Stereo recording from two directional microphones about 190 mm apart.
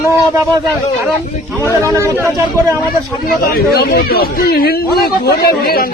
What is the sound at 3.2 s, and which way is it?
Speech, 55° left (ahead or behind).